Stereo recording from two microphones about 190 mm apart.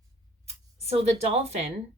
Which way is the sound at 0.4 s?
35° right (ahead or behind).